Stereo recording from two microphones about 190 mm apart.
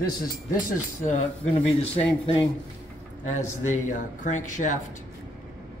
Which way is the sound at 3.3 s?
40° left (ahead or behind).